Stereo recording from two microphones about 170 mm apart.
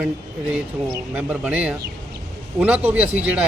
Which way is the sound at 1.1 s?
10° right (ahead or behind).